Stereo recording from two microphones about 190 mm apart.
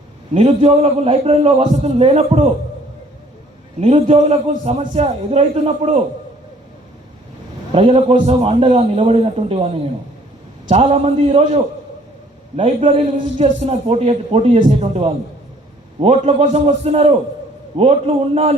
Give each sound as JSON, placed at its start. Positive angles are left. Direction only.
{"t": 0.3, "sound": "a man's voice", "side_deg": -35}
{"t": 3.8, "sound": "a man's voice", "side_deg": -35}
{"t": 7.7, "sound": "a man's voice", "side_deg": -30}
{"t": 10.7, "sound": "a man's voice", "side_deg": -35}